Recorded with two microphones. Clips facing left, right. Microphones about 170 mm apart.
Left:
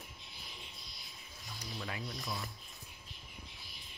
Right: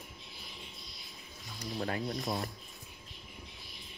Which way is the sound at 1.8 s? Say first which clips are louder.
Right 9 dB; 45° right (ahead or behind).